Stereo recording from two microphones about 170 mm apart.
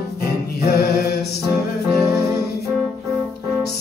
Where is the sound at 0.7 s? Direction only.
65° left (ahead or behind).